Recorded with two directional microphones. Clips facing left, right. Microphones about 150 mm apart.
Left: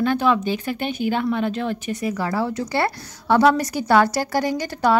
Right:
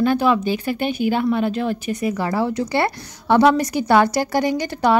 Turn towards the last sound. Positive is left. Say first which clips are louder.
# right 2 dB
turn(degrees=-20)  # may be behind; listen again after turning